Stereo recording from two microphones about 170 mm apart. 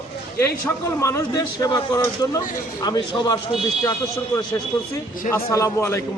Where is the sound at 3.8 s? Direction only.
20° left (ahead or behind).